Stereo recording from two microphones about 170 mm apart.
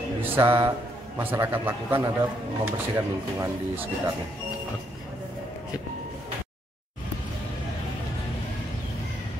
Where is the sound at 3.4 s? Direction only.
20° right (ahead or behind).